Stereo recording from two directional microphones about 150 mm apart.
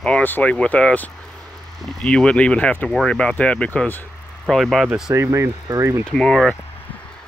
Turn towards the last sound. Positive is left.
turn(degrees=5)  # may be behind; listen again after turning